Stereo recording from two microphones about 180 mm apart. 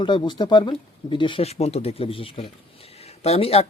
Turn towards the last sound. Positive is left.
turn(degrees=35)  # may be behind; listen again after turning